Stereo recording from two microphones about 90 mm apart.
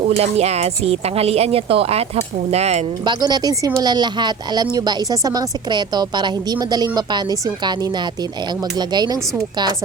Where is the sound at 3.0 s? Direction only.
50° right (ahead or behind).